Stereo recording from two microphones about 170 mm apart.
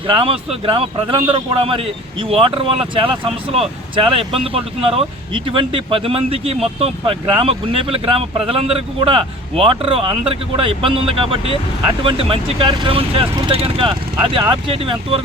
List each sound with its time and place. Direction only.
0.1 s speech: 30° right (ahead or behind)
2.3 s speech: 35° right (ahead or behind)